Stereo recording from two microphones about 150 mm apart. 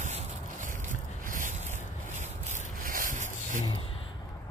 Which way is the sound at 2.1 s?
50° right (ahead or behind).